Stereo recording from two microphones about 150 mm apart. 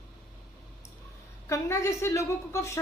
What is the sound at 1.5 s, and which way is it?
A woman's voice, 20° left (ahead or behind).